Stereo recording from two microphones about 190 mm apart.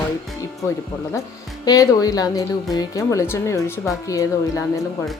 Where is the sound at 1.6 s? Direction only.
20° left (ahead or behind).